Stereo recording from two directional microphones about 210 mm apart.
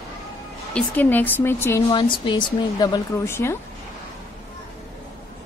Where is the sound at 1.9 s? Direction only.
20° left (ahead or behind).